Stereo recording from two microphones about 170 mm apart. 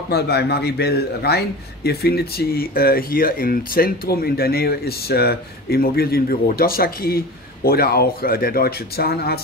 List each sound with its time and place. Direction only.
0.1 s a man's voice: 70° left (ahead or behind)